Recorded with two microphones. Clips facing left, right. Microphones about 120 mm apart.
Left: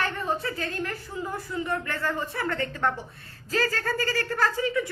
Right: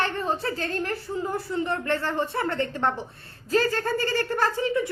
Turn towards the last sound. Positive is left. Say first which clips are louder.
# right 2 dB
turn(degrees=-25)  # may be behind; listen again after turning